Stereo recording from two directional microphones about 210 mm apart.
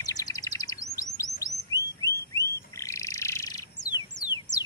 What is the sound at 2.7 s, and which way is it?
Bird, 15° left (ahead or behind).